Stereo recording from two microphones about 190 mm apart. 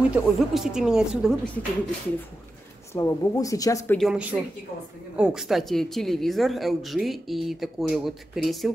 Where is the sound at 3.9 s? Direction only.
5° right (ahead or behind).